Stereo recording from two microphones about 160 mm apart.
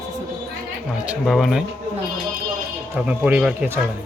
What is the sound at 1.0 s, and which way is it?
Speech, 5° right (ahead or behind).